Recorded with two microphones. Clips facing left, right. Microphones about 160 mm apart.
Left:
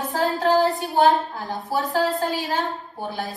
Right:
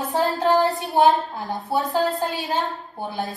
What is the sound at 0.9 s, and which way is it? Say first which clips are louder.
A woman's voice: right 2 dB; 20° right (ahead or behind).